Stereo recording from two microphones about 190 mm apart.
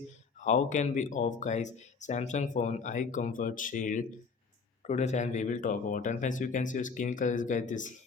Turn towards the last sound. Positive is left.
turn(degrees=40)  # may be behind; listen again after turning